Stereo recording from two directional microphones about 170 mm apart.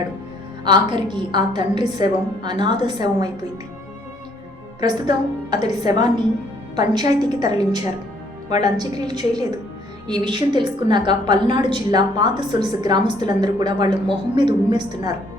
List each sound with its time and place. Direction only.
0.6 s a woman's voice: 25° right (ahead or behind)
4.8 s a woman's voice: 25° right (ahead or behind)